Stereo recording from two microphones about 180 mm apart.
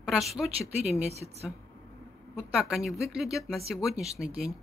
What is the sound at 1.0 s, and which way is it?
Speech, 35° right (ahead or behind).